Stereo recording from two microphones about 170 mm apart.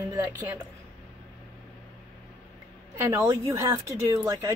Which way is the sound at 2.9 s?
15° right (ahead or behind).